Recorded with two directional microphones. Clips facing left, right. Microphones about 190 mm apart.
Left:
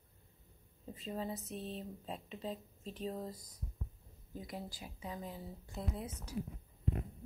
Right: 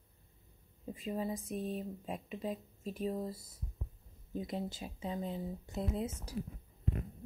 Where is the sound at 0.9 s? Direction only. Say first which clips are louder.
Right 3 dB; 10° right (ahead or behind).